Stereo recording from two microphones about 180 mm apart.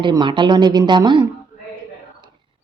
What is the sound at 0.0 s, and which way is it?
A woman's voice, 25° right (ahead or behind).